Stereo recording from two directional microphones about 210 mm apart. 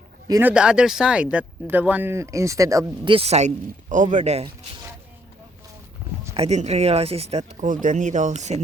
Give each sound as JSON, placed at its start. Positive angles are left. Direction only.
{"t": 0.3, "sound": "speech", "side_deg": -10}
{"t": 6.3, "sound": "speech", "side_deg": -30}